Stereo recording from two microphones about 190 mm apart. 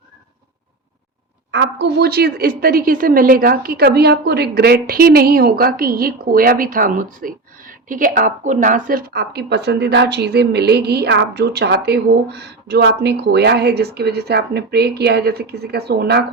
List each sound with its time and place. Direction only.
1.5 s a woman's voice: 65° right (ahead or behind)